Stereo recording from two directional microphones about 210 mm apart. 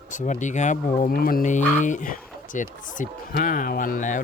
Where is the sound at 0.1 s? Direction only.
35° left (ahead or behind).